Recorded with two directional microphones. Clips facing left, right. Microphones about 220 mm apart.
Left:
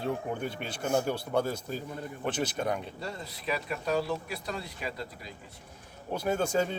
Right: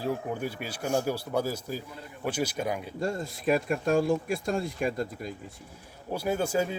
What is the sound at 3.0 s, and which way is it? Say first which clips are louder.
Speech: right 8 dB; 45° right (ahead or behind).